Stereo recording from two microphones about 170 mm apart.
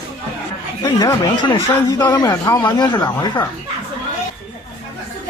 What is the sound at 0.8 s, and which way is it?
Speech, 20° left (ahead or behind).